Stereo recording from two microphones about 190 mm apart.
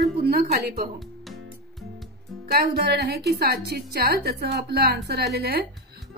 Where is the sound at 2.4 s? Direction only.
55° right (ahead or behind).